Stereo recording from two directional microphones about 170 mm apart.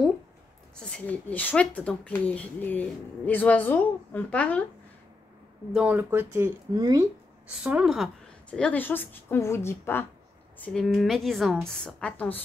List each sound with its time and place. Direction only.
0.8 s speech: 5° left (ahead or behind)
5.7 s speech: 5° right (ahead or behind)
7.6 s speech: 5° right (ahead or behind); by 10.0 s 15° left (ahead or behind)
10.6 s a woman's voice: 5° left (ahead or behind)